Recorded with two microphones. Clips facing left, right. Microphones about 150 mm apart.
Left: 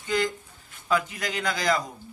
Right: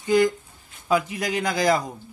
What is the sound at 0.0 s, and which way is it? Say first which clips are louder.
A man's voice: right 7 dB; 15° right (ahead or behind).